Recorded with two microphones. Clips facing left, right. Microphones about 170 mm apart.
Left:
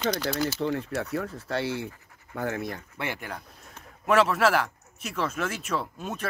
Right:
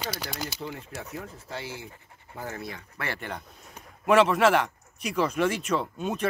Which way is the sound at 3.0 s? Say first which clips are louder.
Right 2 dB; 10° left (ahead or behind).